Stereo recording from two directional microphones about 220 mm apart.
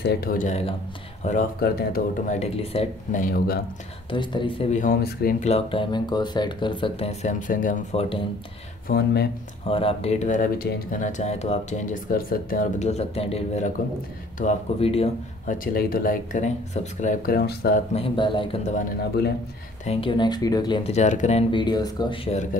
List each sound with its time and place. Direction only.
0.0 s speech: 45° left (ahead or behind)
4.1 s speech: 20° left (ahead or behind); by 5.5 s 40° left (ahead or behind)
5.5 s speech: 25° left (ahead or behind)
8.8 s speech: 45° left (ahead or behind)
9.7 s speech: 25° left (ahead or behind)
15.5 s speech: 40° left (ahead or behind)
17.9 s speech: 25° left (ahead or behind)
19.8 s speech: 25° left (ahead or behind)